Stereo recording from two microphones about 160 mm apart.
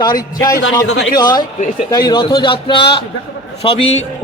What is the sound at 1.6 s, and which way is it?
Speech, 50° left (ahead or behind).